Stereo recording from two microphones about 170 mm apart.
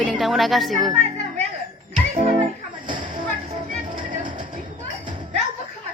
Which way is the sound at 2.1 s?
40° right (ahead or behind).